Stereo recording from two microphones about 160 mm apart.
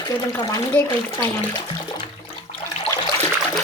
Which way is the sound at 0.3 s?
25° left (ahead or behind).